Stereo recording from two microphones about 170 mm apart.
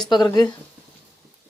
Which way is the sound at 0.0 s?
25° left (ahead or behind).